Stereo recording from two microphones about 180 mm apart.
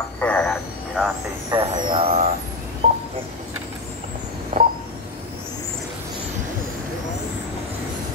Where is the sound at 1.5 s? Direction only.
20° right (ahead or behind).